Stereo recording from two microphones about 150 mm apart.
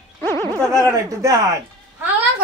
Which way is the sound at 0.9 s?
20° right (ahead or behind).